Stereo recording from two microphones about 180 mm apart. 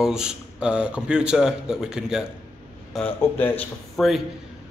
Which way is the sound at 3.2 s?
10° left (ahead or behind).